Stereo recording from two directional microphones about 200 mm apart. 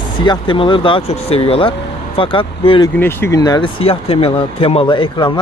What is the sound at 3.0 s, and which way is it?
Speech, 10° left (ahead or behind).